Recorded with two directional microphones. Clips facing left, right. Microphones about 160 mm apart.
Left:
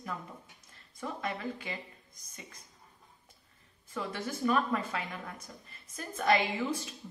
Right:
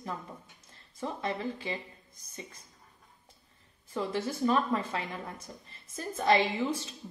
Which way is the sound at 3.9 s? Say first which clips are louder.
Right 4 dB; 25° right (ahead or behind).